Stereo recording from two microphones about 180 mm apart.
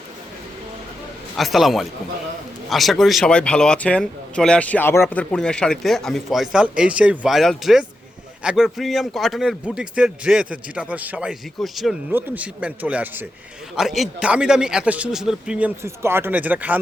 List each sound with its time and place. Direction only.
1.4 s a man's voice: centre (ahead or behind)